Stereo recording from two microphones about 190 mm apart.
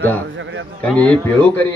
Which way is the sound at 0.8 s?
5° left (ahead or behind).